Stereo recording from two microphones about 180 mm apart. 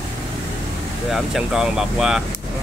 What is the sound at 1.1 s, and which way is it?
Speech, 5° right (ahead or behind).